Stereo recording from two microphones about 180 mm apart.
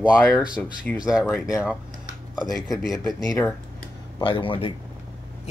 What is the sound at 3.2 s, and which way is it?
Speech, 15° left (ahead or behind).